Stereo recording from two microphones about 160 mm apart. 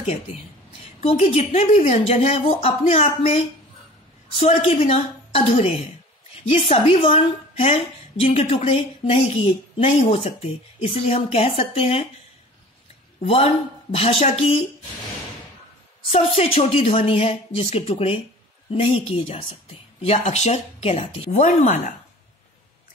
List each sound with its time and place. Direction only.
0.0 s a woman's voice: 40° left (ahead or behind)
13.2 s a woman's voice: 35° left (ahead or behind)
16.1 s a woman's voice: 40° left (ahead or behind)
21.4 s speech: 50° left (ahead or behind)